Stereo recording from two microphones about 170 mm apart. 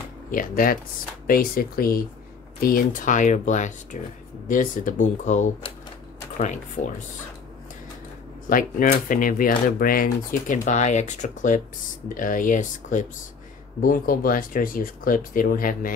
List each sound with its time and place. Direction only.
0.3 s speech: 55° left (ahead or behind)
8.5 s speech: 55° left (ahead or behind)